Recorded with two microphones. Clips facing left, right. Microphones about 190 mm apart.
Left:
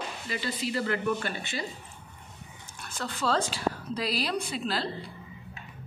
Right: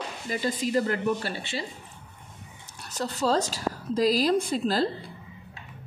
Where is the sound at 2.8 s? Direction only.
40° right (ahead or behind).